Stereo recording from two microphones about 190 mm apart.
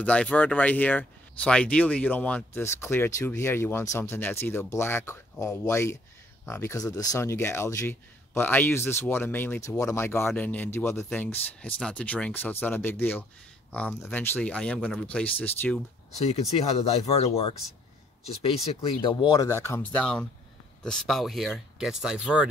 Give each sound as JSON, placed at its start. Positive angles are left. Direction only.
{"t": 0.0, "sound": "speech", "side_deg": 5}
{"t": 16.2, "sound": "speech", "side_deg": 35}
{"t": 18.4, "sound": "speech", "side_deg": 30}